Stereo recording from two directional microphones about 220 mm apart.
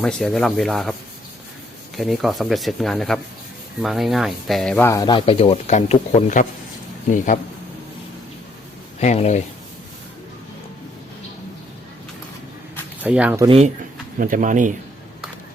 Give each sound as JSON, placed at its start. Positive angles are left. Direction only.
{"t": 0.0, "sound": "speech", "side_deg": 5}
{"t": 2.0, "sound": "speech", "side_deg": 0}
{"t": 9.0, "sound": "speech", "side_deg": 30}
{"t": 13.0, "sound": "speech", "side_deg": -5}
{"t": 14.2, "sound": "speech", "side_deg": -40}